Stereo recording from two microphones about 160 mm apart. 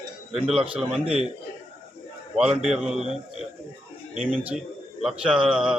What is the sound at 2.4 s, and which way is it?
Mantra, 5° right (ahead or behind).